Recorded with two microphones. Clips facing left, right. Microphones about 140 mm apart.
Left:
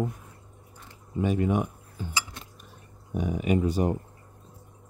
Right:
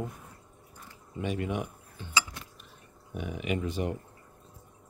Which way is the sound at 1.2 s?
45° left (ahead or behind).